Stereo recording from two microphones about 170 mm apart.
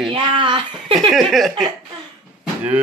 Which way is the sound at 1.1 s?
Centre (ahead or behind).